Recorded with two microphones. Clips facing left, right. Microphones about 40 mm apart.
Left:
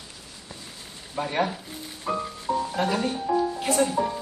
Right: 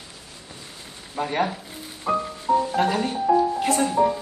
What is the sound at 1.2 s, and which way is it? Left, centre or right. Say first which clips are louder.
Speech: right 2 dB; centre.